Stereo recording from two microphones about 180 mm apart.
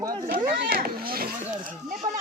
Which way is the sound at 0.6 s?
55° right (ahead or behind).